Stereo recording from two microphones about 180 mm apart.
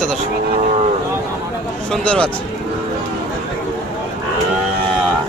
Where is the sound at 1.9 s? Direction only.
5° left (ahead or behind).